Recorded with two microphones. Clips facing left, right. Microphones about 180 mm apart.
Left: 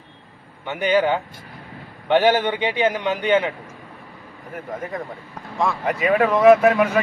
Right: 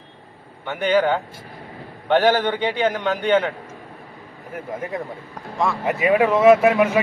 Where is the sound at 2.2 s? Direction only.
10° left (ahead or behind).